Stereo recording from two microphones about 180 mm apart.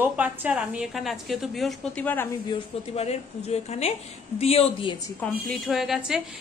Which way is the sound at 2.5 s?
35° left (ahead or behind).